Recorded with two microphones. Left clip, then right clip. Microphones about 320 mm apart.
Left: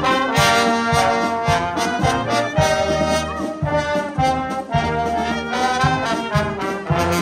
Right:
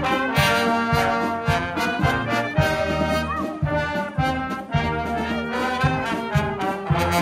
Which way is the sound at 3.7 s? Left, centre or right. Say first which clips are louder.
Left 5 dB; centre.